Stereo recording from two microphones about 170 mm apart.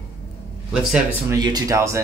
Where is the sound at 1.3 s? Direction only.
25° right (ahead or behind).